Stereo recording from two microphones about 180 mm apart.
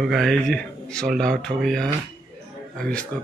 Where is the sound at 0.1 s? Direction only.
Centre (ahead or behind).